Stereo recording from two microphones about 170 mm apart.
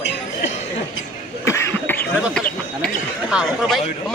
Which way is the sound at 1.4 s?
15° left (ahead or behind).